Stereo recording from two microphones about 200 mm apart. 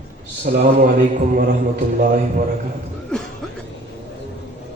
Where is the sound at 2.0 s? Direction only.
45° right (ahead or behind).